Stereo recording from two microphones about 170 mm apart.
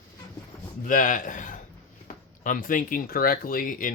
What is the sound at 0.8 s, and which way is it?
Speech, 55° left (ahead or behind).